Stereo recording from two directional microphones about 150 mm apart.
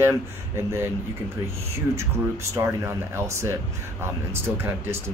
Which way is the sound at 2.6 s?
20° right (ahead or behind).